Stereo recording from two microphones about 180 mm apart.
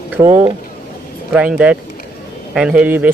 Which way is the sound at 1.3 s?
5° right (ahead or behind).